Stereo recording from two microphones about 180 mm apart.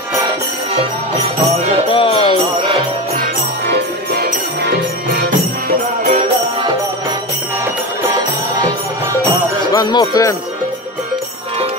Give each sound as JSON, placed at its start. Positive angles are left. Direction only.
{"t": 1.9, "sound": "music", "side_deg": 30}
{"t": 3.2, "sound": "music", "side_deg": -65}
{"t": 9.7, "sound": "jingle bell", "side_deg": 20}